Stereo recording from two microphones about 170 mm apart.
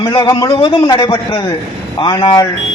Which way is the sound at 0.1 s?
25° left (ahead or behind).